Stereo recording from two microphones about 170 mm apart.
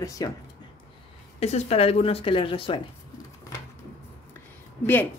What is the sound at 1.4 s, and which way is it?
A woman's voice, 40° left (ahead or behind).